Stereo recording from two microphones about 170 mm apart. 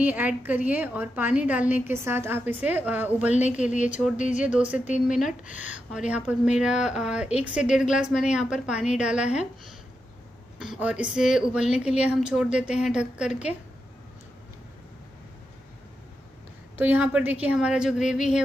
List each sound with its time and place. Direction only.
0.0 s a woman's voice: 10° right (ahead or behind)
3.3 s speech: 40° left (ahead or behind)
4.3 s a woman's voice: 5° right (ahead or behind)
10.6 s speech: 5° right (ahead or behind)
16.7 s a woman's voice: 10° right (ahead or behind)